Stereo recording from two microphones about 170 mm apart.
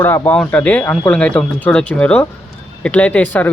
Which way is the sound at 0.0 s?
10° left (ahead or behind).